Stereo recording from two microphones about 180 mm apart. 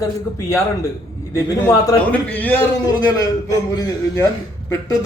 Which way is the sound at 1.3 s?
15° left (ahead or behind).